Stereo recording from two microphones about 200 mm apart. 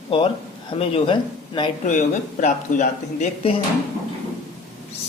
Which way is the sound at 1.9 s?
40° left (ahead or behind).